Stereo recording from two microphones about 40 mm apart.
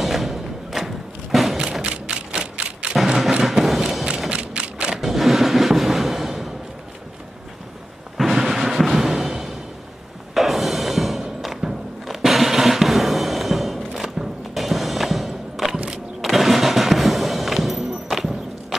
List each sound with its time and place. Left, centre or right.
0.0 s thump: centre
1.6 s thump: right
2.9 s music: centre
4.3 s a sound: right
4.9 s a sound: centre
8.3 s music: centre